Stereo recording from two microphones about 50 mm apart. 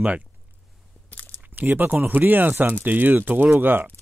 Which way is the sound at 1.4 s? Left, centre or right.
Right.